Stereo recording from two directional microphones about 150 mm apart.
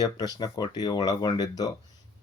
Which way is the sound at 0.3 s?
25° left (ahead or behind).